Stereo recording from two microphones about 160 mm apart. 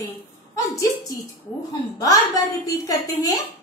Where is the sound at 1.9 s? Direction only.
20° left (ahead or behind).